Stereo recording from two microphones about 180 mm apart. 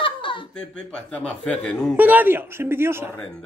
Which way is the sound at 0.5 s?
5° left (ahead or behind).